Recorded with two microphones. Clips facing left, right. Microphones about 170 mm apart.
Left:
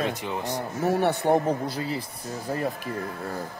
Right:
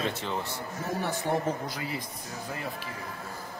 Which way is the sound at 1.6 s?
30° left (ahead or behind).